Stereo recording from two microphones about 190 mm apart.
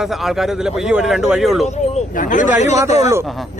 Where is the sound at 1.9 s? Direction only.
40° left (ahead or behind).